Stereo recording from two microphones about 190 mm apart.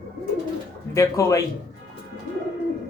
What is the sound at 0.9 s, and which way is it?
Speech, 15° left (ahead or behind).